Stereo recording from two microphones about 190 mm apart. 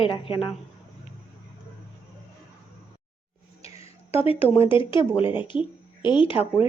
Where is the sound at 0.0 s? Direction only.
25° left (ahead or behind).